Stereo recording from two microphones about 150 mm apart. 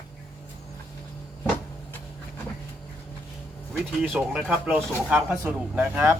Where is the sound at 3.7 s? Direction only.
5° right (ahead or behind).